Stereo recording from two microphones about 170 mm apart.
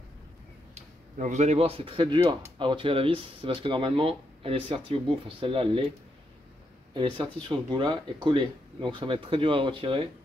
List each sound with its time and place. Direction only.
0.7 s speech: 45° right (ahead or behind)
6.9 s speech: 30° right (ahead or behind)